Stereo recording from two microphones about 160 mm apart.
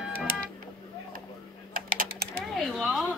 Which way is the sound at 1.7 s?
65° right (ahead or behind).